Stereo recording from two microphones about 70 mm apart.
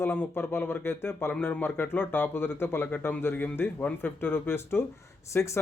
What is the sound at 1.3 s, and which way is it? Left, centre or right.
Speech, left.